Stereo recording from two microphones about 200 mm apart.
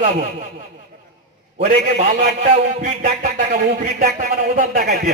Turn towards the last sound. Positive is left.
turn(degrees=-50)  # may be behind; listen again after turning